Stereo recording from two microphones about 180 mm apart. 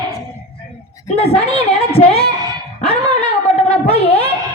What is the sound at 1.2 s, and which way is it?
A woman's voice, 35° left (ahead or behind).